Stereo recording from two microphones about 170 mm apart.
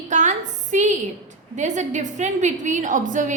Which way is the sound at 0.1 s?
45° right (ahead or behind).